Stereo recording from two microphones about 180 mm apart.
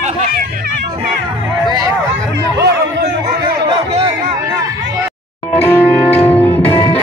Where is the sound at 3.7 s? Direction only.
30° right (ahead or behind).